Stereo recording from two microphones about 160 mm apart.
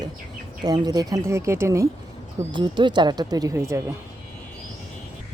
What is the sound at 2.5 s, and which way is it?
Speech, 30° right (ahead or behind).